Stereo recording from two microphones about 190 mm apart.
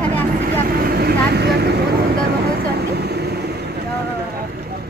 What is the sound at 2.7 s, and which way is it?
Vehicle, 55° right (ahead or behind).